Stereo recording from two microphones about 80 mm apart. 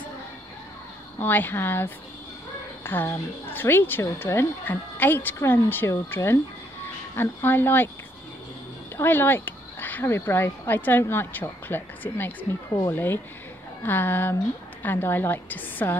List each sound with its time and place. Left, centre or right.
1.2 s speech: left
8.9 s speech: left